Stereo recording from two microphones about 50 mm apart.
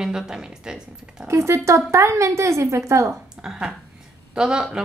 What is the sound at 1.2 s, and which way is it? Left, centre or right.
A woman's voice, right.